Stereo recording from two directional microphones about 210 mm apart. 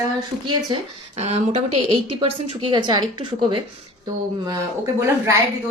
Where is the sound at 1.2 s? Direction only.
30° right (ahead or behind).